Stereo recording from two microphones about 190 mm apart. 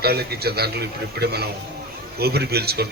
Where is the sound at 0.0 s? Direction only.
55° right (ahead or behind).